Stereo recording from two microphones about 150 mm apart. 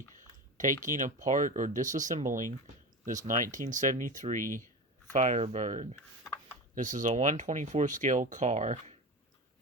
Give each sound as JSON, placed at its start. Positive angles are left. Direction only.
{"t": 0.5, "sound": "speech", "side_deg": -60}
{"t": 3.5, "sound": "speech", "side_deg": -55}
{"t": 4.4, "sound": "speech", "side_deg": 15}
{"t": 5.1, "sound": "speech", "side_deg": -50}